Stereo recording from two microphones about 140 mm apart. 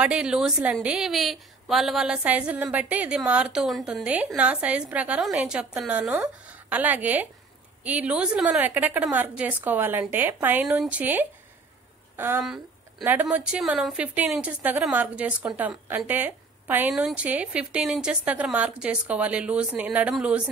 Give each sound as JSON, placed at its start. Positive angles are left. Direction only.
{"t": 0.0, "sound": "a woman's voice", "side_deg": -5}